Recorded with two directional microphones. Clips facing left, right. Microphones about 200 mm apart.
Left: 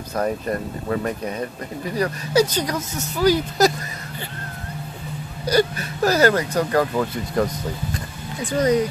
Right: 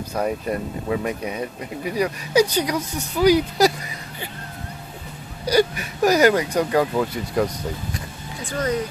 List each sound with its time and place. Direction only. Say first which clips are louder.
0.1 s speech: left 1 dB; 10° right (ahead or behind)
5.5 s speech: even; 10° right (ahead or behind)
8.5 s speech: left 5 dB; 20° left (ahead or behind)